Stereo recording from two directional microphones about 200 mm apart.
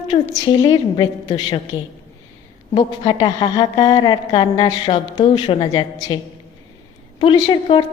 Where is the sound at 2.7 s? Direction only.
20° left (ahead or behind).